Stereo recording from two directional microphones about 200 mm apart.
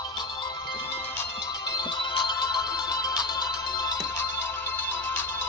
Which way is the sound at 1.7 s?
20° left (ahead or behind).